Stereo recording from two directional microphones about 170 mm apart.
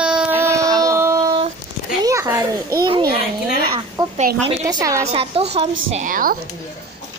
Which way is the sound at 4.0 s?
20° right (ahead or behind).